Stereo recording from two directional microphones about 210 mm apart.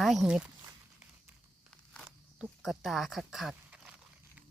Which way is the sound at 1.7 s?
Centre (ahead or behind).